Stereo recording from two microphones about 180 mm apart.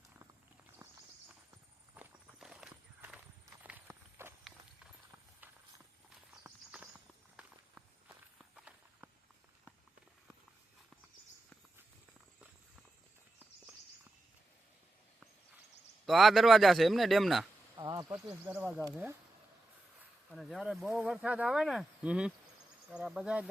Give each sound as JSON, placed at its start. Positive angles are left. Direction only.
{"t": 2.0, "sound": "walk", "side_deg": -5}
{"t": 3.6, "sound": "run", "side_deg": -10}
{"t": 6.4, "sound": "horse", "side_deg": -5}
{"t": 7.3, "sound": "walk", "side_deg": -5}
{"t": 16.0, "sound": "speech", "side_deg": 0}
{"t": 17.7, "sound": "a sound", "side_deg": -20}
{"t": 18.1, "sound": "speech", "side_deg": -10}
{"t": 20.3, "sound": "speech", "side_deg": 0}